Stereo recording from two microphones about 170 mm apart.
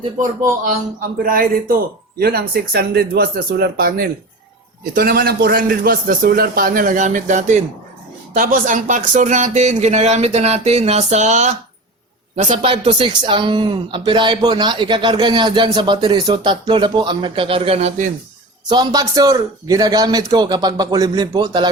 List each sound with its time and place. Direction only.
1.2 s a man's voice: 55° right (ahead or behind)
12.6 s speech: 30° right (ahead or behind)
18.7 s speech: 25° right (ahead or behind)